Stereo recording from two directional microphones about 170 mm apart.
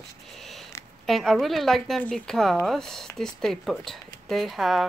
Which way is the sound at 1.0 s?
Centre (ahead or behind).